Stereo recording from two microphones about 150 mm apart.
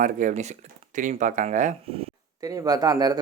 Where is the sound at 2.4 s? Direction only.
25° right (ahead or behind).